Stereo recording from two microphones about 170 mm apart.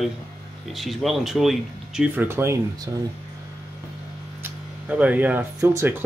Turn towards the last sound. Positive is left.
turn(degrees=-15)  # may be behind; listen again after turning